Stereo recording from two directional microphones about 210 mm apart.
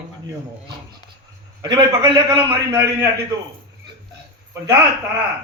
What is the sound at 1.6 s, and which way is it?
A man's voice, 25° right (ahead or behind).